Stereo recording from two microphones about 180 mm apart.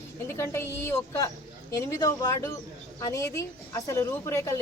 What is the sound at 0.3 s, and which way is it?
A woman's voice, 15° left (ahead or behind).